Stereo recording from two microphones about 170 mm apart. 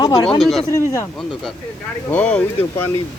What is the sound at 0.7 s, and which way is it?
Speech, 20° left (ahead or behind).